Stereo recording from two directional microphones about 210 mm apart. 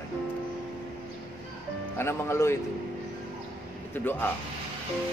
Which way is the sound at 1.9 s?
10° left (ahead or behind).